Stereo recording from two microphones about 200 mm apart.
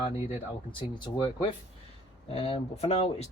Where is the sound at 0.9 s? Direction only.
25° left (ahead or behind).